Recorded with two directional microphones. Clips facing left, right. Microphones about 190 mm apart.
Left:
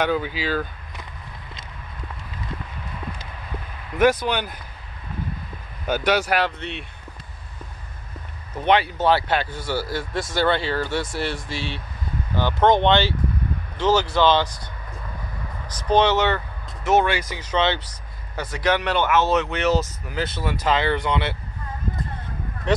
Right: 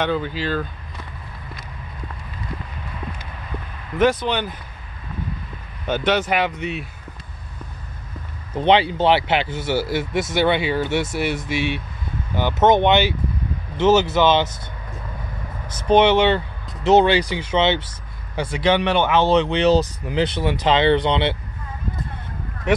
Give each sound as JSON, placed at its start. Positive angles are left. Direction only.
{"t": 0.0, "sound": "speech", "side_deg": 5}
{"t": 4.0, "sound": "speech", "side_deg": 5}
{"t": 5.9, "sound": "speech", "side_deg": 5}
{"t": 6.4, "sound": "speech", "side_deg": -10}
{"t": 8.5, "sound": "speech", "side_deg": -30}
{"t": 15.7, "sound": "speech", "side_deg": -25}
{"t": 20.3, "sound": "speech", "side_deg": -25}